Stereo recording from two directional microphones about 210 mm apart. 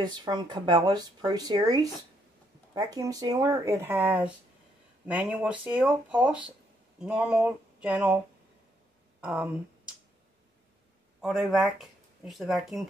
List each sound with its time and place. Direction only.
0.0 s speech: 20° right (ahead or behind)
7.0 s a sound: 5° right (ahead or behind)
9.2 s speech: 5° right (ahead or behind)
11.1 s speech: centre (ahead or behind)